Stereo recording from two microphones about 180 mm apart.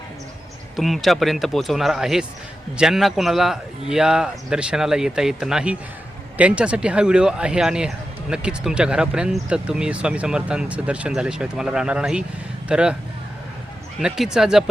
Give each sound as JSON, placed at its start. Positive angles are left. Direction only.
{"t": 0.8, "sound": "speech", "side_deg": 0}
{"t": 14.0, "sound": "speech", "side_deg": -5}